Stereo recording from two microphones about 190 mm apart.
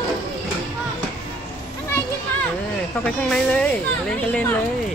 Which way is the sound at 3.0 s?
5° left (ahead or behind).